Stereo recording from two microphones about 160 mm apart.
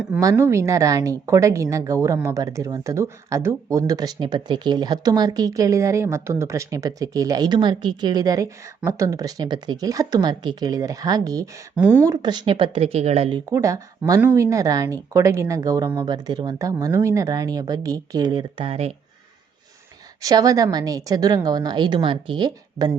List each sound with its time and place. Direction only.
0.2 s speech: 20° right (ahead or behind)
11.8 s speech: 10° right (ahead or behind)
12.0 s speech: 25° right (ahead or behind)
13.5 s speech: 20° right (ahead or behind); by 18.9 s 40° right (ahead or behind)
20.2 s speech: 20° right (ahead or behind)